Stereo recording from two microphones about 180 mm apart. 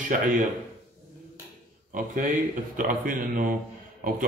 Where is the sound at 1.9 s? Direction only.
45° right (ahead or behind).